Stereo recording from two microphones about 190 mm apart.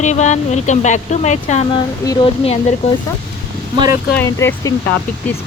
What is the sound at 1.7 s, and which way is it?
Speech, 25° left (ahead or behind).